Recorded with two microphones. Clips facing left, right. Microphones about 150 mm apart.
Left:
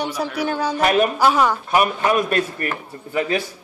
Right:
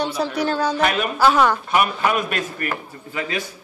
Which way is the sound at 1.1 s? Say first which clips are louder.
Right 1 dB; 10° left (ahead or behind).